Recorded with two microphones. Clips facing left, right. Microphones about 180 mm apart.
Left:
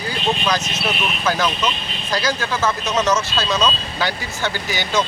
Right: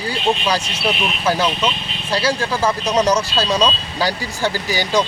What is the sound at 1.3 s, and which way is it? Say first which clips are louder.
Speech: right 2 dB; 30° right (ahead or behind).